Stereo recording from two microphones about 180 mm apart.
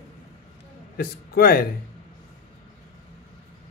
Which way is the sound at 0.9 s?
55° left (ahead or behind).